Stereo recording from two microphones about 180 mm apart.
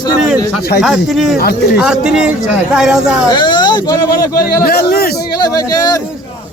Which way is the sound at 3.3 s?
25° left (ahead or behind).